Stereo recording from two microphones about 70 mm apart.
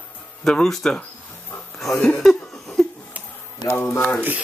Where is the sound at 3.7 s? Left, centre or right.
Left.